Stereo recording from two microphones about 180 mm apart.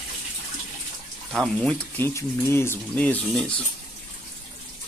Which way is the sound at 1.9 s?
15° left (ahead or behind).